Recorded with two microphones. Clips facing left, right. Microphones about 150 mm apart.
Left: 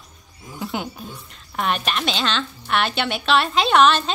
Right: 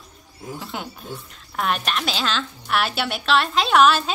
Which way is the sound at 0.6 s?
Centre (ahead or behind).